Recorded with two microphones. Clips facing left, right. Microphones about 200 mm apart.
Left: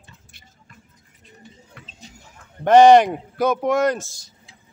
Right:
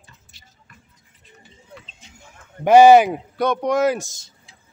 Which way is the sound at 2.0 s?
35° left (ahead or behind).